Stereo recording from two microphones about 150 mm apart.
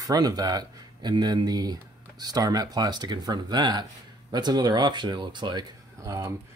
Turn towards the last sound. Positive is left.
turn(degrees=-20)  # may be behind; listen again after turning